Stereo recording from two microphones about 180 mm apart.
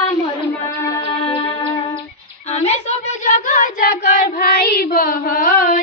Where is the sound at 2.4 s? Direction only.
35° left (ahead or behind).